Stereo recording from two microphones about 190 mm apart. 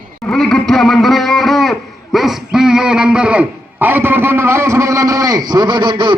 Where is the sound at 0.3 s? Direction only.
5° left (ahead or behind).